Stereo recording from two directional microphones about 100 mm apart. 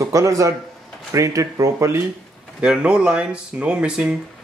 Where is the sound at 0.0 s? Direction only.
35° right (ahead or behind).